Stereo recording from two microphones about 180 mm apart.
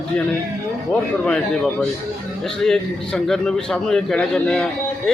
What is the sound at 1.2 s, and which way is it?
A man's voice, 5° left (ahead or behind).